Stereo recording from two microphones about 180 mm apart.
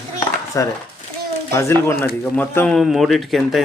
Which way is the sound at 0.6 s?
15° left (ahead or behind).